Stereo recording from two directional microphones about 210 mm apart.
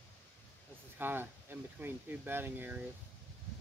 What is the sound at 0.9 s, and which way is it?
Speech, 10° right (ahead or behind).